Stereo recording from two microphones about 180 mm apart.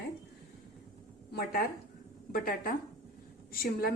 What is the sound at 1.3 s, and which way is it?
A woman's voice, 60° left (ahead or behind).